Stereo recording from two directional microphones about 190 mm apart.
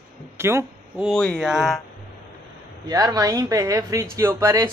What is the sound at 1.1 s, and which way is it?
Speech, 5° left (ahead or behind).